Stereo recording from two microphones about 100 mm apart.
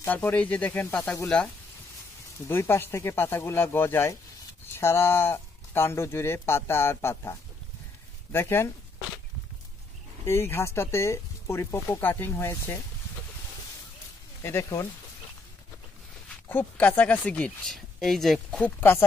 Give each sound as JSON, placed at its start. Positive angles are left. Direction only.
{"t": 0.0, "sound": "speech", "side_deg": 20}
{"t": 2.4, "sound": "speech", "side_deg": 25}
{"t": 10.2, "sound": "speech", "side_deg": 25}
{"t": 14.4, "sound": "speech", "side_deg": 30}
{"t": 16.4, "sound": "speech", "side_deg": 15}
{"t": 18.8, "sound": "speech", "side_deg": 20}